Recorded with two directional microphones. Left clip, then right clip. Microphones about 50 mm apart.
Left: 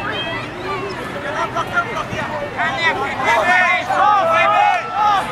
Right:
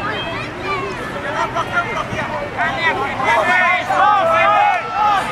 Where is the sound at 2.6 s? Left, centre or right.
Centre.